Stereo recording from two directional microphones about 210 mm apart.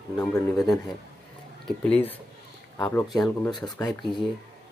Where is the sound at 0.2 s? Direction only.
Centre (ahead or behind).